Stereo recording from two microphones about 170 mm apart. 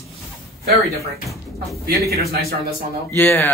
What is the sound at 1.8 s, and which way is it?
Speech, 65° right (ahead or behind).